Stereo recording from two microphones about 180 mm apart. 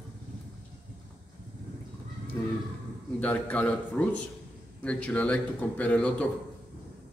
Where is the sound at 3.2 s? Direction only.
10° left (ahead or behind).